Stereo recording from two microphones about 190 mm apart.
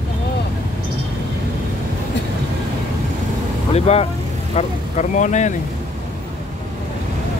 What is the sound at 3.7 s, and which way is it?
Vehicle, 35° left (ahead or behind).